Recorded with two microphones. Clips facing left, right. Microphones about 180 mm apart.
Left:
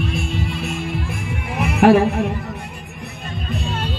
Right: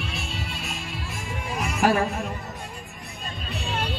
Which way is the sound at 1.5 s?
65° left (ahead or behind).